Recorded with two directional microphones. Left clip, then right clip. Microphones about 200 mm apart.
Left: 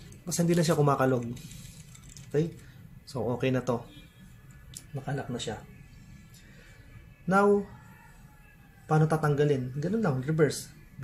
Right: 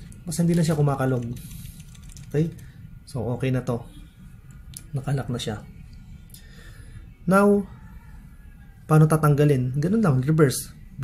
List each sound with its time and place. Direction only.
0.2 s speech: 10° left (ahead or behind)
2.1 s typing: centre (ahead or behind)
3.1 s speech: centre (ahead or behind)
4.7 s speech: 25° right (ahead or behind)
7.2 s a man's voice: 20° right (ahead or behind)
8.8 s a man's voice: 25° right (ahead or behind)